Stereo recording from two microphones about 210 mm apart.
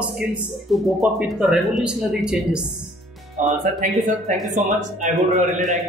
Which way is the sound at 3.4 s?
35° right (ahead or behind).